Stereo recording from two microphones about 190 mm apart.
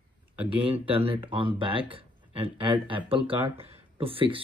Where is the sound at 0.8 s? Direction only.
30° right (ahead or behind).